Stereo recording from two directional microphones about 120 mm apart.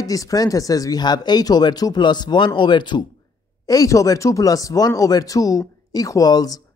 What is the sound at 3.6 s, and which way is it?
Speech, 30° left (ahead or behind).